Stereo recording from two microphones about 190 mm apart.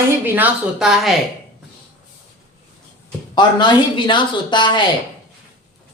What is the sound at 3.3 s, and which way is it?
Speech, 25° left (ahead or behind).